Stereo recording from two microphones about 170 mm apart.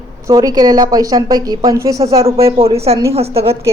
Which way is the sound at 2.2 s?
35° right (ahead or behind).